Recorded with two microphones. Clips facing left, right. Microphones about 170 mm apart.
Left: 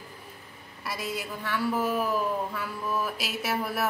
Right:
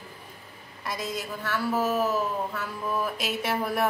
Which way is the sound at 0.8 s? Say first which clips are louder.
Right 1 dB; 10° left (ahead or behind).